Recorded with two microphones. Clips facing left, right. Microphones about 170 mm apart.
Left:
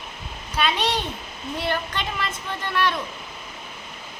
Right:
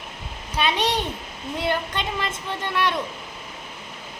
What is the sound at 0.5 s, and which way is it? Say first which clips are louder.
A woman's voice: right 1 dB; 20° right (ahead or behind).